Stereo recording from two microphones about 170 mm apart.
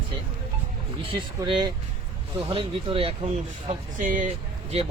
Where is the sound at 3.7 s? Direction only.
50° right (ahead or behind).